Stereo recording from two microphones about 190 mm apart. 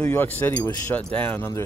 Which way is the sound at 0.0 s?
10° left (ahead or behind).